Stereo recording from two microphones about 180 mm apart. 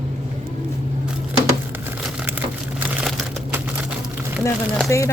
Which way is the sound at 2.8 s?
10° right (ahead or behind).